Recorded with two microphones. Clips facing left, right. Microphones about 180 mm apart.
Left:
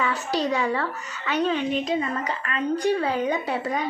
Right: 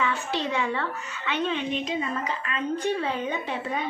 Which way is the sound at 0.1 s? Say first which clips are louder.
Left 3 dB; 35° left (ahead or behind).